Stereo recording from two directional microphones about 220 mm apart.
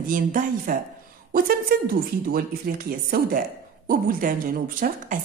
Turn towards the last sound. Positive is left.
turn(degrees=-40)  # may be behind; listen again after turning